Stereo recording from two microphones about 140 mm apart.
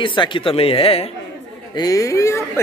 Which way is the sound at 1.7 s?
25° left (ahead or behind).